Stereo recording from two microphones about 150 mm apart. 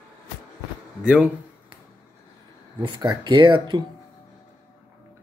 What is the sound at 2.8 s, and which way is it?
Speech, 30° right (ahead or behind).